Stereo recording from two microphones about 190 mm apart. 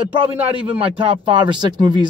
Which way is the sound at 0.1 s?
30° right (ahead or behind).